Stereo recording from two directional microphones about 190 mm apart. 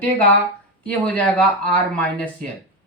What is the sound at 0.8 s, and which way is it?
A woman's voice, 5° left (ahead or behind).